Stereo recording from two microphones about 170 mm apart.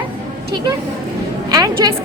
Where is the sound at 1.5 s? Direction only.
25° right (ahead or behind).